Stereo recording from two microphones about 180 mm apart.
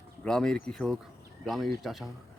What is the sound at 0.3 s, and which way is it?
Speech, 5° left (ahead or behind).